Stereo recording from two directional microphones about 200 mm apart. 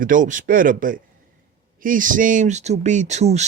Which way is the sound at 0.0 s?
40° right (ahead or behind).